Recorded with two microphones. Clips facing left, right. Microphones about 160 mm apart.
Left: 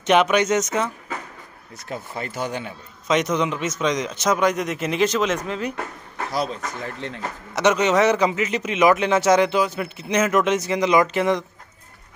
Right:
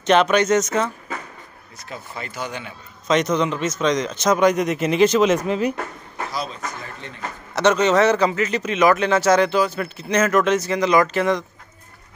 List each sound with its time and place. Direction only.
0.0 s a man's voice: 10° left (ahead or behind)
1.9 s speech: 45° left (ahead or behind)
3.1 s a man's voice: 10° left (ahead or behind)
6.3 s speech: 65° left (ahead or behind); by 7.2 s 80° left
7.5 s a man's voice: 15° left (ahead or behind)